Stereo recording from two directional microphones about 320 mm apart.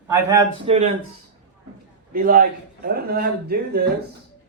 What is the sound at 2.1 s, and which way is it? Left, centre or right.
A man's voice, right.